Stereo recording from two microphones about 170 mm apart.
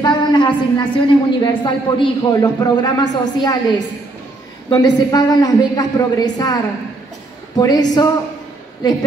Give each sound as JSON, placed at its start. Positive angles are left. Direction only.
{"t": 0.0, "sound": "a woman's voice", "side_deg": 25}
{"t": 4.6, "sound": "a woman's voice", "side_deg": 25}